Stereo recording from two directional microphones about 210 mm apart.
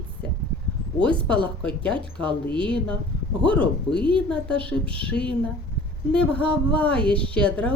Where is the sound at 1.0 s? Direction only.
5° left (ahead or behind).